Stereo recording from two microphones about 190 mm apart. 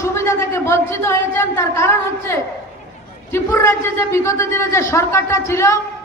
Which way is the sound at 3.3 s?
15° left (ahead or behind).